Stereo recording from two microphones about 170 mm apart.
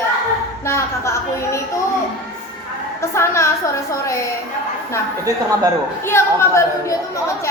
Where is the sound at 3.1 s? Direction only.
15° left (ahead or behind).